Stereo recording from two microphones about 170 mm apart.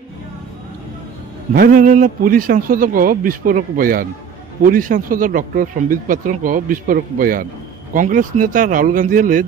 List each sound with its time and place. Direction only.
1.5 s a man's voice: 55° right (ahead or behind)